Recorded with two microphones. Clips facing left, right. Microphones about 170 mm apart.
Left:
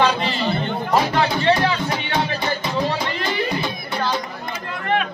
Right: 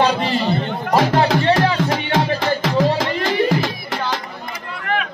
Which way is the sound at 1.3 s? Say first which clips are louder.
Right 2 dB; 90° right.